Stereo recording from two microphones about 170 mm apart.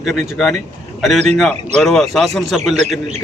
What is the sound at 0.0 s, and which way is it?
Speech, centre (ahead or behind).